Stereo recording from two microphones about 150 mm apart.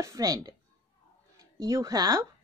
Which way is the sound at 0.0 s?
25° right (ahead or behind).